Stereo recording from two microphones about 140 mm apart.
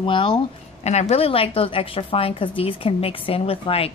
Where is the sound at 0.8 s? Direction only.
50° left (ahead or behind).